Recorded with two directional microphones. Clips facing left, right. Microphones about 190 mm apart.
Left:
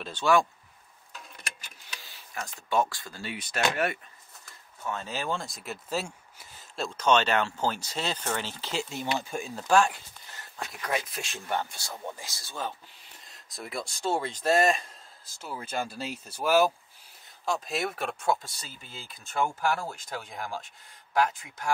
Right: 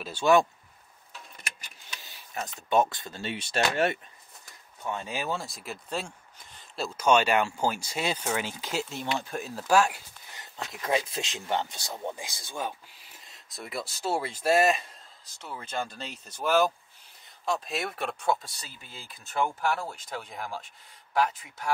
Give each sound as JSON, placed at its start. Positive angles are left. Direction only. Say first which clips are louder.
{"t": 0.0, "sound": "speech", "louder": "right 2 dB", "side_deg": -10}
{"t": 2.0, "sound": "speech", "louder": "right 3 dB", "side_deg": -20}
{"t": 4.8, "sound": "speech", "louder": "even", "side_deg": -15}
{"t": 7.0, "sound": "speech", "louder": "right 1 dB", "side_deg": -10}
{"t": 10.7, "sound": "speech", "louder": "right 4 dB", "side_deg": -25}
{"t": 13.2, "sound": "speech", "louder": "left 1 dB", "side_deg": 0}
{"t": 15.4, "sound": "speech", "louder": "left 1 dB", "side_deg": 5}